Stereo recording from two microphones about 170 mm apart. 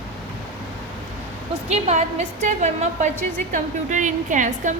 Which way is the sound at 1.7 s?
40° right (ahead or behind).